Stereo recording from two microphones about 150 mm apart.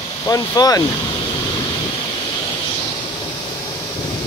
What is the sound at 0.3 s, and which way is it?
Speech, 25° left (ahead or behind).